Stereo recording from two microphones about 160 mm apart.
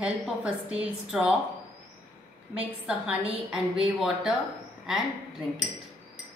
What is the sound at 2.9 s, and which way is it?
A woman's voice, 10° right (ahead or behind).